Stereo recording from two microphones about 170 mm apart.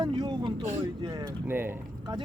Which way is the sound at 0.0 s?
25° right (ahead or behind).